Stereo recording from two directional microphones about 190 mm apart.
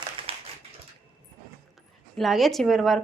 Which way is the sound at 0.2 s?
25° right (ahead or behind).